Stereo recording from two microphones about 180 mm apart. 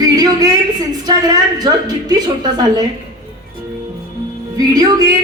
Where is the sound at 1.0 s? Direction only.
20° right (ahead or behind).